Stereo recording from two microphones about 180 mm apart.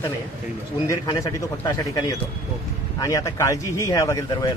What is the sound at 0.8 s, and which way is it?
A man's voice, 20° left (ahead or behind).